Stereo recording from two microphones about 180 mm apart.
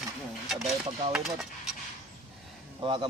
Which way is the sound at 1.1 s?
Centre (ahead or behind).